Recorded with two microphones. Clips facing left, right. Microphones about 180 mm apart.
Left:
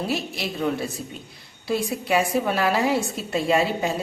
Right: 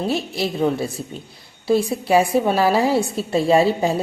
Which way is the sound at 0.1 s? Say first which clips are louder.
Right 5 dB; 30° right (ahead or behind).